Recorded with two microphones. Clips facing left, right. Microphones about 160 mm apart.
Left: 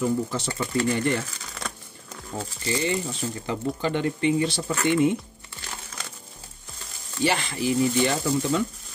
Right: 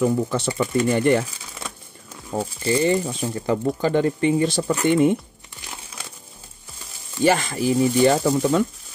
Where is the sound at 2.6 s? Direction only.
40° right (ahead or behind).